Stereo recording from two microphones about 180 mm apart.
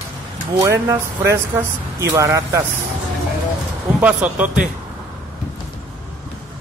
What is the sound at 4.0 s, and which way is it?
Speech, 5° right (ahead or behind).